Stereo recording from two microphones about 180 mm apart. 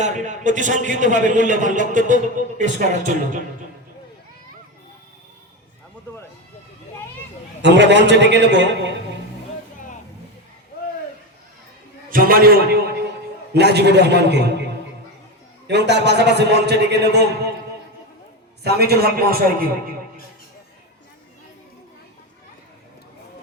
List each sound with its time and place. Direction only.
0.0 s a man's voice: 40° right (ahead or behind)
7.6 s a man's voice: 75° right (ahead or behind)
12.1 s a man's voice: 55° right (ahead or behind)
18.6 s a man's voice: 60° right (ahead or behind)